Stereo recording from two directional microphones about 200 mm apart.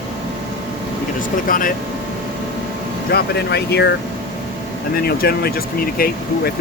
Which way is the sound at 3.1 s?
55° left (ahead or behind).